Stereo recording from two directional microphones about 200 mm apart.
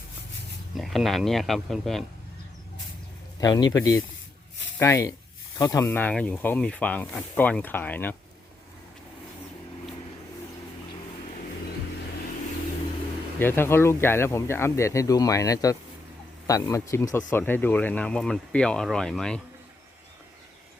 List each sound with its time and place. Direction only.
0.8 s speech: centre (ahead or behind)
3.4 s speech: 20° left (ahead or behind)
13.4 s speech: 10° left (ahead or behind)